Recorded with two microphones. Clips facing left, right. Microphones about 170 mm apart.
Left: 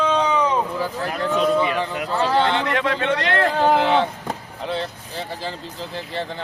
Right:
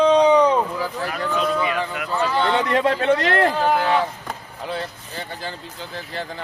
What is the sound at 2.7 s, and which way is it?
Speech, 35° right (ahead or behind).